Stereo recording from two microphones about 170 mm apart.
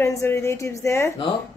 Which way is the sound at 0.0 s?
15° left (ahead or behind).